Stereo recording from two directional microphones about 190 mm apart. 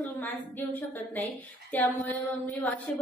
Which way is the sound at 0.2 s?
10° left (ahead or behind).